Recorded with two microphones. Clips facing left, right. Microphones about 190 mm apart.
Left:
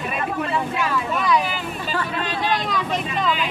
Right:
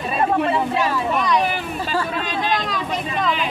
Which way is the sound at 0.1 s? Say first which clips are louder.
Right 7 dB; 30° right (ahead or behind).